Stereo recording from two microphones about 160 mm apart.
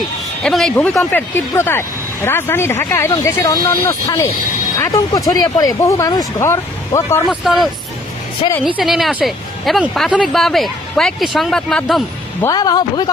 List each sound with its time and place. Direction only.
0.4 s speech: 5° left (ahead or behind)
7.3 s speech: centre (ahead or behind)
12.4 s speech: 25° left (ahead or behind)